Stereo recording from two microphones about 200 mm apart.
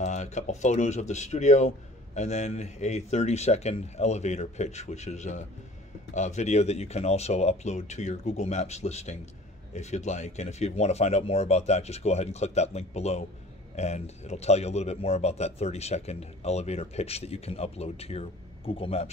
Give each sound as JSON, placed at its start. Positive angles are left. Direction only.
{"t": 0.0, "sound": "speech", "side_deg": 35}